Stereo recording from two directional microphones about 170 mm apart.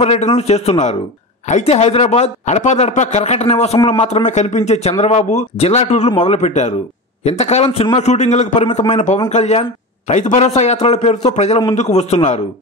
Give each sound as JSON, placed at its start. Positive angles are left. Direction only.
{"t": 0.0, "sound": "speech", "side_deg": 35}